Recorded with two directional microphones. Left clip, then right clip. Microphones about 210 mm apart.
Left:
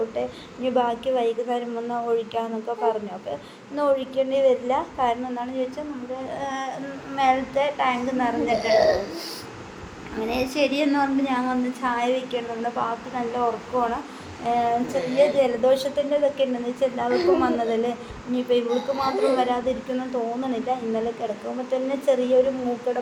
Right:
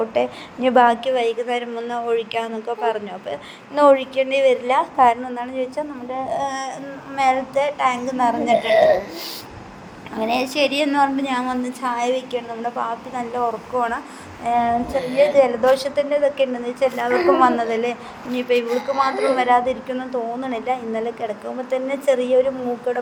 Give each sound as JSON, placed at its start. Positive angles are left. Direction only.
{"t": 0.1, "sound": "a woman's voice", "side_deg": -20}